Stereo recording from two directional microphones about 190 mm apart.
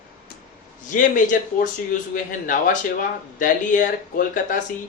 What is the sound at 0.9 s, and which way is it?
Speech, 45° left (ahead or behind).